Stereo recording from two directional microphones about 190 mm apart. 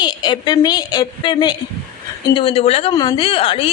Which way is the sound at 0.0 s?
25° left (ahead or behind).